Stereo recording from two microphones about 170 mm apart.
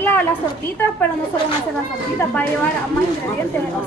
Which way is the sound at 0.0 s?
10° left (ahead or behind).